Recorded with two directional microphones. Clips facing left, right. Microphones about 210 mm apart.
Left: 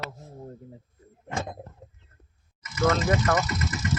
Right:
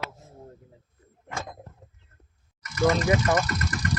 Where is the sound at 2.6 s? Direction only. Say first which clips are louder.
Right 1 dB; 20° left (ahead or behind).